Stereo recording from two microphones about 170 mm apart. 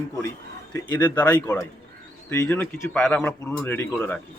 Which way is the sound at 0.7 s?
25° left (ahead or behind).